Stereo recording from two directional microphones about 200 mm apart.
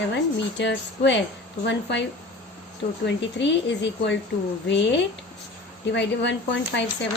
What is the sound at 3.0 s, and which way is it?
Speech, 60° left (ahead or behind).